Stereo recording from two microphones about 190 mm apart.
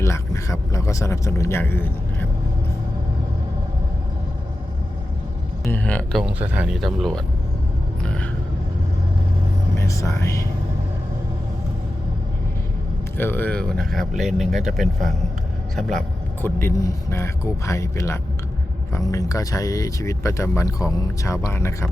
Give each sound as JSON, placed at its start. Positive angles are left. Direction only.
{"t": 0.0, "sound": "speech", "side_deg": 15}
{"t": 5.6, "sound": "speech", "side_deg": 10}
{"t": 8.0, "sound": "rumble", "side_deg": 5}
{"t": 9.7, "sound": "speech", "side_deg": 15}
{"t": 13.1, "sound": "speech", "side_deg": 10}